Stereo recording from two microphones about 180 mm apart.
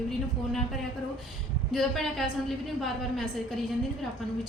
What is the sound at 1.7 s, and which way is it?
A woman's voice, centre (ahead or behind).